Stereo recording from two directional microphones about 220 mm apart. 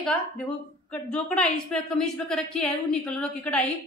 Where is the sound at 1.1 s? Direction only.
5° left (ahead or behind).